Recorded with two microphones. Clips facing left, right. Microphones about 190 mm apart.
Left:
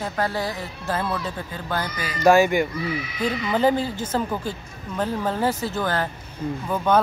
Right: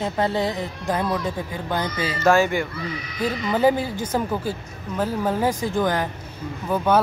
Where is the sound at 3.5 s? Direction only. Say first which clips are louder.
Right 1 dB; 10° right (ahead or behind).